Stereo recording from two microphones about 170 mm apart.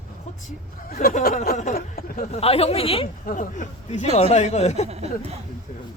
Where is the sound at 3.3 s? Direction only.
50° left (ahead or behind).